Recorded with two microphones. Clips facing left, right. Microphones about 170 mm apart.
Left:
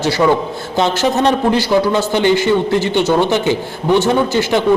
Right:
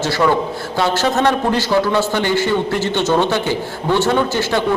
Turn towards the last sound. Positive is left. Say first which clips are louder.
# left 3 dB
turn(degrees=15)  # may be behind; listen again after turning